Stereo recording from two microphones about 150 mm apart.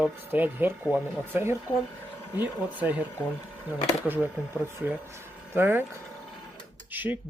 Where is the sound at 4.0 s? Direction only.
10° right (ahead or behind).